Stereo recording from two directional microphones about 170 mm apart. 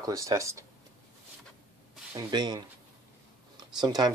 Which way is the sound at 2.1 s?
25° right (ahead or behind).